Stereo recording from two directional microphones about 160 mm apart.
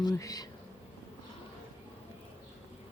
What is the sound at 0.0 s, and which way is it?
Speech, 20° left (ahead or behind).